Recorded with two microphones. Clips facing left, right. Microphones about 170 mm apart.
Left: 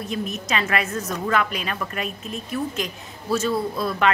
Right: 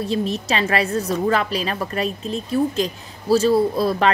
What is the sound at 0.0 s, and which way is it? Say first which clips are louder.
A woman's voice: right 6 dB; 30° right (ahead or behind).